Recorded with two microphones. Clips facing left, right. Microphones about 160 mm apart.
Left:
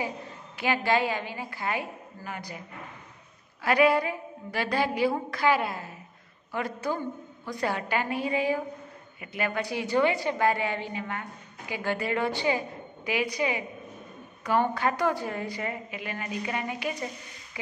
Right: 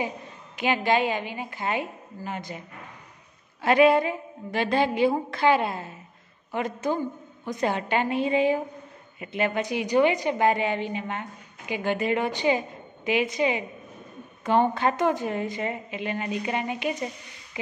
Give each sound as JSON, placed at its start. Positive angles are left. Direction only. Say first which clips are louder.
{"t": 0.6, "sound": "a woman's voice", "louder": "right 2 dB", "side_deg": -20}
{"t": 3.6, "sound": "a woman's voice", "louder": "right 4 dB", "side_deg": -25}